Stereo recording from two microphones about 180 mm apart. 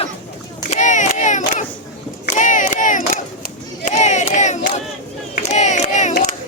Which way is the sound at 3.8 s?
45° left (ahead or behind).